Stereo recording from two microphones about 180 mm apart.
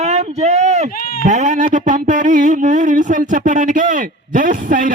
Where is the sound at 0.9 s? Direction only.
55° left (ahead or behind).